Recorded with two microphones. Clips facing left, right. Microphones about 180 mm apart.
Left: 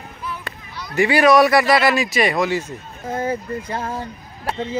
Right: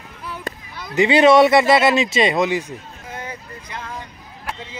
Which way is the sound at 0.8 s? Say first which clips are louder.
Right 2 dB; 20° right (ahead or behind).